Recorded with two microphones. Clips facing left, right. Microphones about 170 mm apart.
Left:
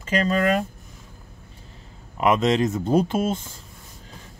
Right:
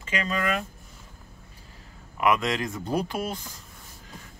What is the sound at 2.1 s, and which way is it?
Speech, 25° left (ahead or behind).